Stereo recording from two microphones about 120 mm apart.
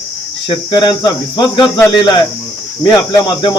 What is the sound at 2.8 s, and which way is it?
Speech, 35° left (ahead or behind).